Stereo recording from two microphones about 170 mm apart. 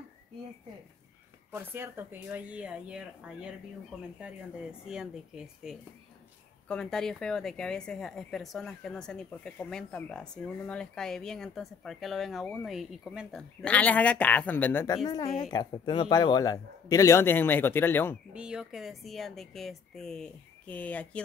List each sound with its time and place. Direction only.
1.5 s speech: 15° right (ahead or behind)
4.8 s a woman's voice: 5° right (ahead or behind); by 15.0 s 15° left (ahead or behind)
15.2 s a woman's voice: 25° left (ahead or behind)
18.3 s a woman's voice: 5° right (ahead or behind)